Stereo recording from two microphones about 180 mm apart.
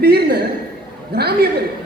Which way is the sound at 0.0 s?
60° right (ahead or behind).